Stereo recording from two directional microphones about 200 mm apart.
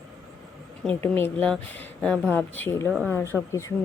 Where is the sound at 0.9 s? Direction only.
10° left (ahead or behind).